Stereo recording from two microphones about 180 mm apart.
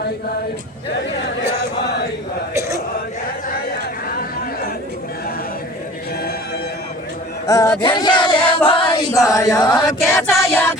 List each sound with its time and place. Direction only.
7.4 s a sound: 15° left (ahead or behind)
8.4 s chant: 30° left (ahead or behind)
10.2 s music: centre (ahead or behind)
10.4 s music: 15° left (ahead or behind)